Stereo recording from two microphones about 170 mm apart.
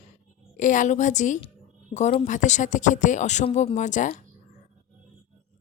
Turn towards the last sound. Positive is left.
turn(degrees=45)  # may be behind; listen again after turning